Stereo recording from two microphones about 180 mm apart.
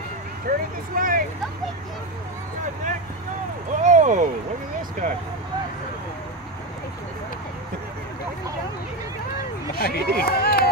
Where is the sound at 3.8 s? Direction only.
40° right (ahead or behind).